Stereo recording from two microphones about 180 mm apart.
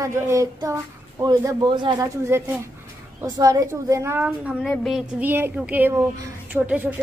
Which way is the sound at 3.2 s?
20° right (ahead or behind).